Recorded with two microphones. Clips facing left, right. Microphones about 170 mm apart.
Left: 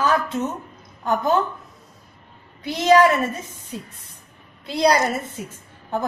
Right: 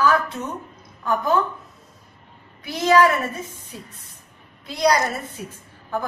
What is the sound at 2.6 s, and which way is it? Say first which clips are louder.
Speech: left 2 dB; 20° left (ahead or behind).